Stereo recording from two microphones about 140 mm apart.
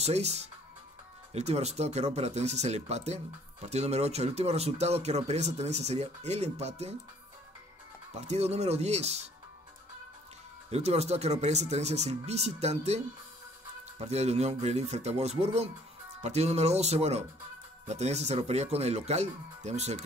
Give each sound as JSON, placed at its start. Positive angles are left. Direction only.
{"t": 0.0, "sound": "speech", "side_deg": -50}
{"t": 8.1, "sound": "speech", "side_deg": -50}
{"t": 10.7, "sound": "speech", "side_deg": -50}